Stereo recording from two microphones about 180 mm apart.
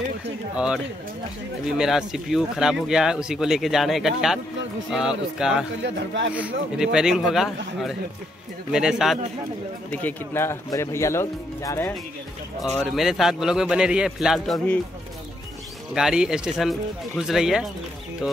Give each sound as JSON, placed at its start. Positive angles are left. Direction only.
{"t": 1.8, "sound": "speech", "side_deg": 0}
{"t": 5.8, "sound": "speech", "side_deg": -85}
{"t": 6.3, "sound": "speech", "side_deg": -5}
{"t": 9.8, "sound": "speech", "side_deg": 10}
{"t": 12.7, "sound": "speech", "side_deg": 0}
{"t": 15.9, "sound": "speech", "side_deg": -5}